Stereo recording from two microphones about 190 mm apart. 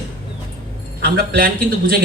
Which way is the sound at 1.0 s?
55° right (ahead or behind).